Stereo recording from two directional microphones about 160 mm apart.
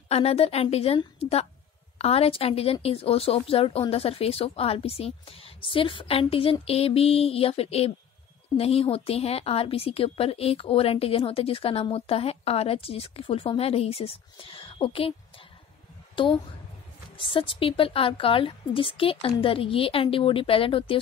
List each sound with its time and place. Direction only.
0.1 s a woman's voice: 40° left (ahead or behind)
16.2 s a woman's voice: 30° left (ahead or behind)